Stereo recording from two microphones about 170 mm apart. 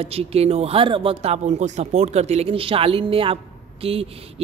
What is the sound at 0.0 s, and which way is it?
Speech, 35° right (ahead or behind).